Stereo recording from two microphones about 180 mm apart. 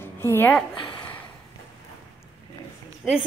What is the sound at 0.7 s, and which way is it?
Speech, 25° left (ahead or behind).